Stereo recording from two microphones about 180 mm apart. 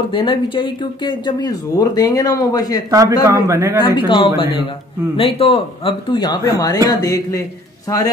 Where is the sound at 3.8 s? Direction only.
25° left (ahead or behind).